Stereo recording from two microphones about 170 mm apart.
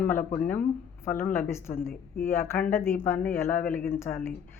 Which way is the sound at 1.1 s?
55° left (ahead or behind).